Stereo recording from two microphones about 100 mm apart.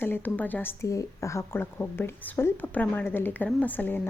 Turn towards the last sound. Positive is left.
turn(degrees=20)  # may be behind; listen again after turning